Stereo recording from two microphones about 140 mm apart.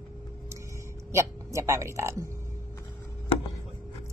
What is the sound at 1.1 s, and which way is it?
Speech, 20° right (ahead or behind).